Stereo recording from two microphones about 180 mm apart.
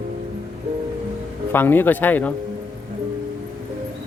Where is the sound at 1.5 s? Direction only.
10° left (ahead or behind).